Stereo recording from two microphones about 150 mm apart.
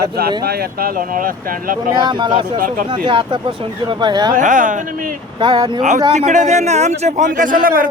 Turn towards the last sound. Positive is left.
turn(degrees=-70)  # may be behind; listen again after turning